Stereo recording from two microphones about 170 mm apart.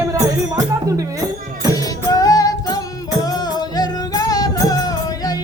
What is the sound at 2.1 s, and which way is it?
Music, 20° left (ahead or behind).